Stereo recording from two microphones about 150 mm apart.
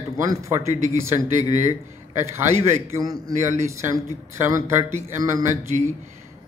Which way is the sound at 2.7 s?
20° right (ahead or behind).